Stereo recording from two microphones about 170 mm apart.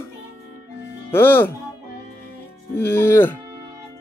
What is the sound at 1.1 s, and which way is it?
Speech, 10° left (ahead or behind).